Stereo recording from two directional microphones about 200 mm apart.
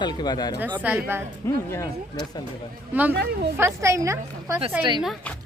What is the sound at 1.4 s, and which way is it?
Speech, 15° left (ahead or behind).